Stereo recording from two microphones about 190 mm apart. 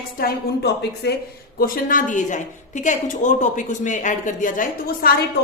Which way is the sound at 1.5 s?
50° left (ahead or behind).